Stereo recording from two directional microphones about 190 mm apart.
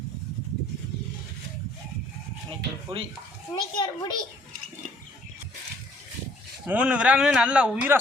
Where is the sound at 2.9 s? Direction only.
25° right (ahead or behind).